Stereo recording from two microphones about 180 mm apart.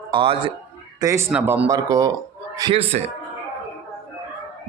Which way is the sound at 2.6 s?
30° right (ahead or behind).